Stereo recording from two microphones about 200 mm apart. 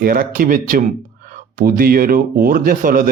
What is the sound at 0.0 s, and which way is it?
Speech, 45° right (ahead or behind).